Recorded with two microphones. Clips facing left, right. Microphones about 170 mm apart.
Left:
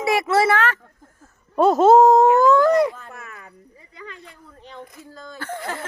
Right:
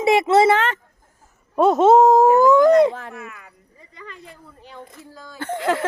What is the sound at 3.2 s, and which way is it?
Chop, 40° left (ahead or behind).